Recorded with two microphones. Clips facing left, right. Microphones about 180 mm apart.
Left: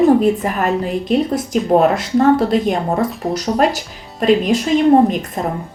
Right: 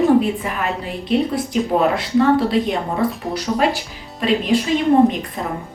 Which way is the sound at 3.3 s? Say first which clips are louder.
Left 3 dB; 45° left (ahead or behind).